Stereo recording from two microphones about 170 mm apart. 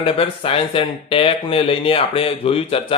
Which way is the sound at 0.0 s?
35° left (ahead or behind).